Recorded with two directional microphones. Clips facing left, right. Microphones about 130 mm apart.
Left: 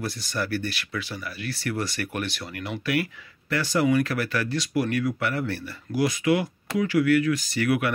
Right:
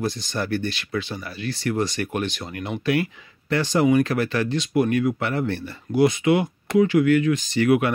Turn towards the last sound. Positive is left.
turn(degrees=-25)  # may be behind; listen again after turning